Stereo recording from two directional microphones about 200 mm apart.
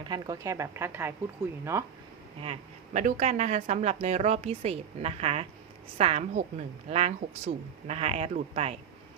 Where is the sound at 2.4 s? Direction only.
35° right (ahead or behind).